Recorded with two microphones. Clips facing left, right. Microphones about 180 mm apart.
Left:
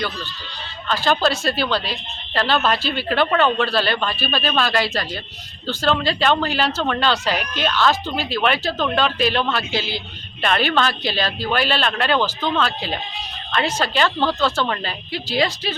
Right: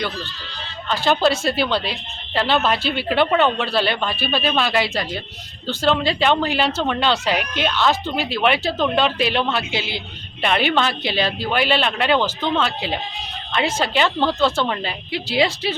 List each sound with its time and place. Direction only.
0.9 s speech: 20° right (ahead or behind)